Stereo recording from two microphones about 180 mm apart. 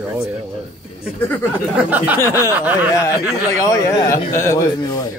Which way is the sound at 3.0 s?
20° left (ahead or behind).